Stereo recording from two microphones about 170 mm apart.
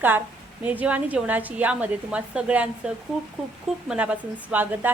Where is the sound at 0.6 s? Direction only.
10° right (ahead or behind).